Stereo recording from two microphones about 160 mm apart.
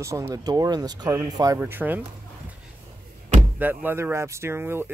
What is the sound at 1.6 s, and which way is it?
Speech, 10° right (ahead or behind).